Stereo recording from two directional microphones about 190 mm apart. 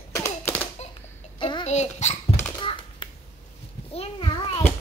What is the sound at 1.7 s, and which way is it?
Speech, 35° left (ahead or behind).